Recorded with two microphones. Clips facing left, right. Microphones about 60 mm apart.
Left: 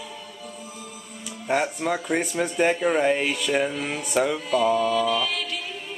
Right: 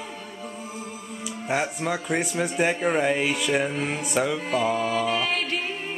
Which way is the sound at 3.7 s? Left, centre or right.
Right.